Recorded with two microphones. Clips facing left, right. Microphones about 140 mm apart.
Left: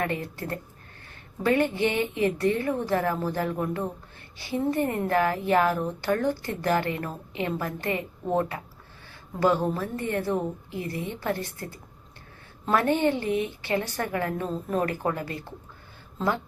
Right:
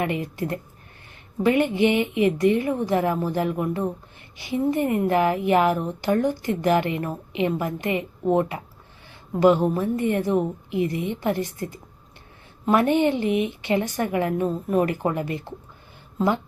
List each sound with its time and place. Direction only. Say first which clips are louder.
0.0 s a woman's voice: right 4 dB; 15° right (ahead or behind)